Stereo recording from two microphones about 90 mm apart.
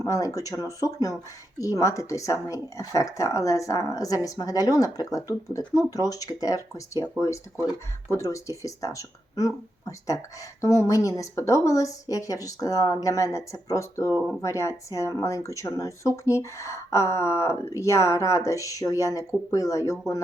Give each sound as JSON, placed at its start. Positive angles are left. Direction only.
{"t": 0.0, "sound": "speech", "side_deg": 40}
{"t": 8.1, "sound": "speech", "side_deg": 35}